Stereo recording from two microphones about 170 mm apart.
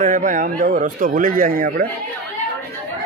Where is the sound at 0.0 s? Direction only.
45° right (ahead or behind).